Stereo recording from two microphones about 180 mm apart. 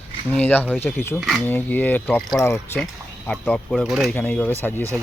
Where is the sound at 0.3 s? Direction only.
10° left (ahead or behind).